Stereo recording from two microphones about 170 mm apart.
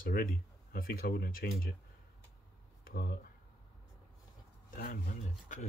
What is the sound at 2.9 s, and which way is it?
Speech, 60° left (ahead or behind).